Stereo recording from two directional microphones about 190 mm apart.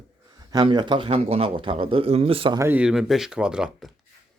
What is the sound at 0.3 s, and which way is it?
A man's voice, 20° right (ahead or behind).